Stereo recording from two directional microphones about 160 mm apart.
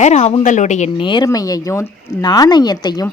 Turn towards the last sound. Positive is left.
turn(degrees=25)  # may be behind; listen again after turning